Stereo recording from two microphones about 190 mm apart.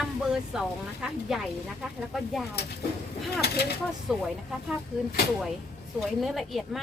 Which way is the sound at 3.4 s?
60° left (ahead or behind).